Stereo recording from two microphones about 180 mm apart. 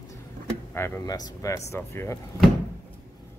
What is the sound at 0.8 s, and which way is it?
Speech, 20° left (ahead or behind).